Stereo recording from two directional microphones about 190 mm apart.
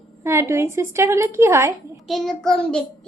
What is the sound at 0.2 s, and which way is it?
Speech, 15° right (ahead or behind).